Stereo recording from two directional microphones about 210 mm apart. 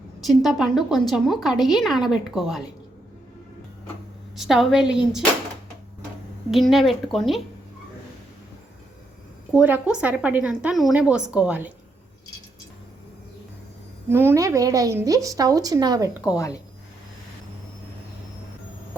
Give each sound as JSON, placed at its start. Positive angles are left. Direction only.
{"t": 0.2, "sound": "a woman's voice", "side_deg": 0}
{"t": 4.4, "sound": "a woman's voice", "side_deg": 0}
{"t": 6.5, "sound": "a woman's voice", "side_deg": 0}
{"t": 9.5, "sound": "a woman's voice", "side_deg": -5}
{"t": 14.1, "sound": "a woman's voice", "side_deg": -10}